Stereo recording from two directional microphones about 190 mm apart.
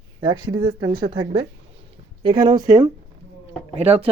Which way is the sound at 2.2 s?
25° right (ahead or behind).